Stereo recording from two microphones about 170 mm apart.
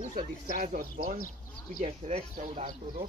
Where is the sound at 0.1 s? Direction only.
50° right (ahead or behind).